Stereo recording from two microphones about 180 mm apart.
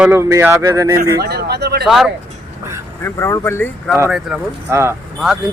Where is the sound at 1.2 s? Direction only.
65° right (ahead or behind).